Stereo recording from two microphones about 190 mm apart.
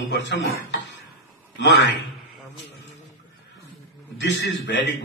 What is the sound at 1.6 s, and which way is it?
Speech, 65° left (ahead or behind).